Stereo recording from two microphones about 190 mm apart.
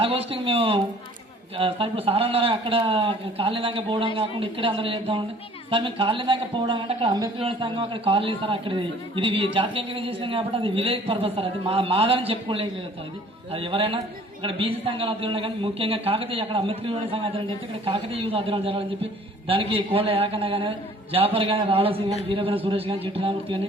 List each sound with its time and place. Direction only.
0.0 s speech: 30° right (ahead or behind)